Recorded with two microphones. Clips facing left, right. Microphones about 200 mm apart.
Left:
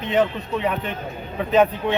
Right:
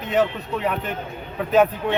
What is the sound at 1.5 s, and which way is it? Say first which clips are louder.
Speech: even; 5° right (ahead or behind).